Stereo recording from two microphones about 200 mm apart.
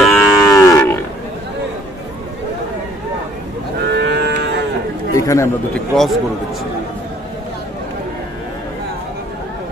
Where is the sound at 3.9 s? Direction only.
55° right (ahead or behind).